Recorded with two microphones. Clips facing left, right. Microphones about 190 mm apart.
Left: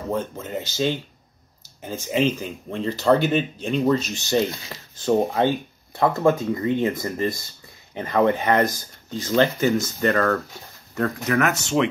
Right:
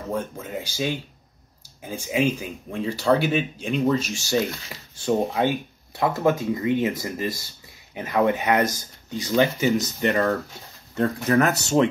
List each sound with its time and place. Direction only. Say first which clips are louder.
0.1 s speech: left 2 dB; 5° right (ahead or behind)
5.4 s speech: left 2 dB; 10° right (ahead or behind)
11.0 s speech: right 2 dB; 30° right (ahead or behind)